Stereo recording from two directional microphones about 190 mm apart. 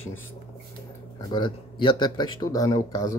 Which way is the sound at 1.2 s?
25° left (ahead or behind).